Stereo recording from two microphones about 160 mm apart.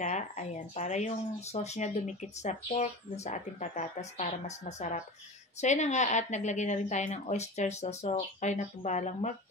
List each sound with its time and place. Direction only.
0.0 s speech: 45° left (ahead or behind)